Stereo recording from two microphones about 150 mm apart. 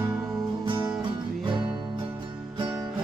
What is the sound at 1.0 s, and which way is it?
Music, 30° right (ahead or behind).